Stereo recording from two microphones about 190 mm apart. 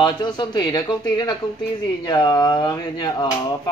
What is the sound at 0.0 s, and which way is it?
Speech, 25° left (ahead or behind).